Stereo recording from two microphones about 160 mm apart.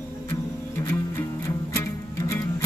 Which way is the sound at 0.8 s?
15° left (ahead or behind).